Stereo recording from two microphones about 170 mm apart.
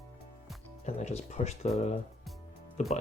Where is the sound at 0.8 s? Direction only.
40° left (ahead or behind).